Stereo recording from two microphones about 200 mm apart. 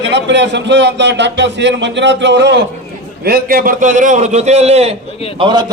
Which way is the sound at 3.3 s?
45° right (ahead or behind).